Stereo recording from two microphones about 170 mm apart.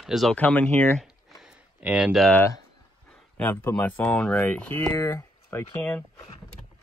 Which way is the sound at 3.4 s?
10° left (ahead or behind).